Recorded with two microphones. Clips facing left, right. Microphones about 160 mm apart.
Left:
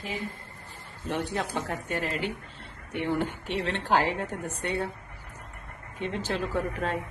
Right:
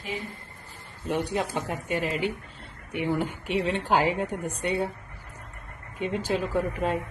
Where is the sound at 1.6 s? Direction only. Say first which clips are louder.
Right 2 dB; 15° right (ahead or behind).